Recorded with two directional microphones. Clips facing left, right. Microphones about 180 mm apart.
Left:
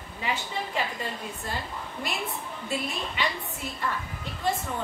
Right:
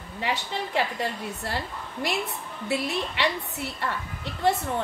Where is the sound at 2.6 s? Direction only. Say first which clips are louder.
Right 5 dB; 70° right (ahead or behind).